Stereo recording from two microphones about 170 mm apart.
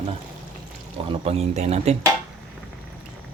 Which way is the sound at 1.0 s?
35° right (ahead or behind).